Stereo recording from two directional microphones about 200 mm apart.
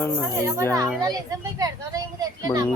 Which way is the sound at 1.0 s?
15° right (ahead or behind).